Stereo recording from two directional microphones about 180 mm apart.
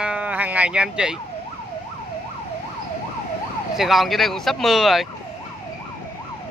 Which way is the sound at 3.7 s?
Centre (ahead or behind).